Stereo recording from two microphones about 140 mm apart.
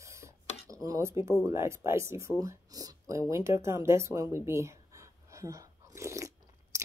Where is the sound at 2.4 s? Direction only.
25° right (ahead or behind).